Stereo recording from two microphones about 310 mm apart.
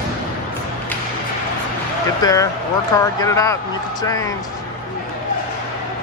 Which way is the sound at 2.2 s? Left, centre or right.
Centre.